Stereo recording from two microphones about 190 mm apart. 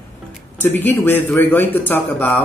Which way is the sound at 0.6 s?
10° left (ahead or behind).